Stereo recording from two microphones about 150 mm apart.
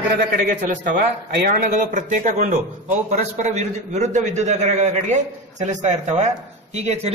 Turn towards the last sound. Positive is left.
turn(degrees=-45)  # may be behind; listen again after turning